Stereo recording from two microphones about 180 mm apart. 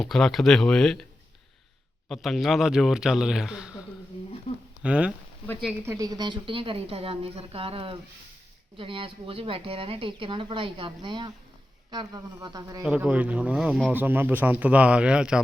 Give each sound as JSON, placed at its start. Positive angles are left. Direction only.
{"t": 0.0, "sound": "speech", "side_deg": 0}
{"t": 2.0, "sound": "speech", "side_deg": 0}
{"t": 4.8, "sound": "speech", "side_deg": -5}
{"t": 5.8, "sound": "a woman's voice", "side_deg": -15}
{"t": 12.8, "sound": "speech", "side_deg": -5}